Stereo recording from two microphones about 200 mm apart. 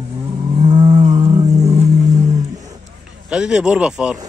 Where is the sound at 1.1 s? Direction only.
15° right (ahead or behind).